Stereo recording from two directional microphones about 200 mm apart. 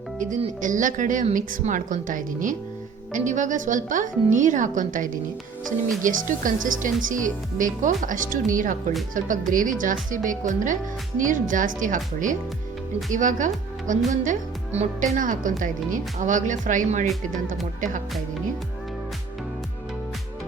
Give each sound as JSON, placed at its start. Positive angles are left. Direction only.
{"t": 0.2, "sound": "speech", "side_deg": -40}
{"t": 14.1, "sound": "music", "side_deg": -35}
{"t": 15.1, "sound": "speech", "side_deg": -40}